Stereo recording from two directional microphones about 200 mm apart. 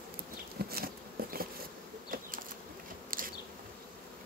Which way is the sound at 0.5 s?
50° right (ahead or behind).